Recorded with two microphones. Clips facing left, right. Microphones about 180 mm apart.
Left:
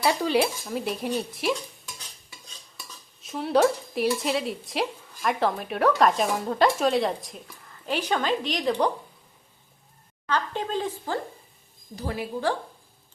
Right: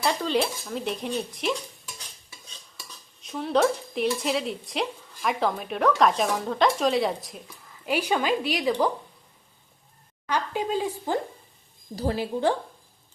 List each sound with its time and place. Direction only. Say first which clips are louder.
0.0 s speech: left 2 dB; 10° left (ahead or behind)
3.2 s speech: left 1 dB; 5° left (ahead or behind)
10.2 s speech: right 1 dB; 10° right (ahead or behind)
11.9 s a woman's voice: right 4 dB; 30° right (ahead or behind)